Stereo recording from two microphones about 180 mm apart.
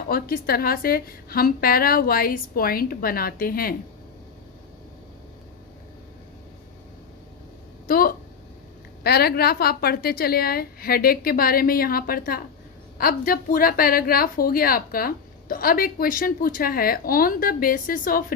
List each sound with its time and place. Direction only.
0.1 s a woman's voice: 55° left (ahead or behind)
7.9 s a sound: 55° left (ahead or behind)
9.0 s a woman's voice: 60° left (ahead or behind)